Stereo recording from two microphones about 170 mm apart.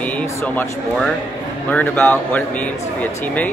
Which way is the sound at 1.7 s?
10° left (ahead or behind).